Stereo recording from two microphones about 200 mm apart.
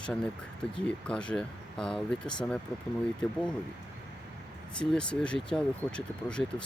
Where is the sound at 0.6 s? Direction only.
5° left (ahead or behind).